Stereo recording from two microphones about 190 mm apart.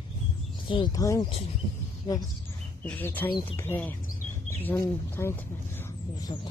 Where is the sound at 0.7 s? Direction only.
20° left (ahead or behind).